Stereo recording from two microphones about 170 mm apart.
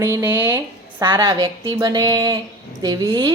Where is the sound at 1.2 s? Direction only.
20° right (ahead or behind).